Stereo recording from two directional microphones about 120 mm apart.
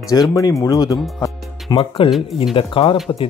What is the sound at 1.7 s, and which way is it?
Speech, 45° left (ahead or behind).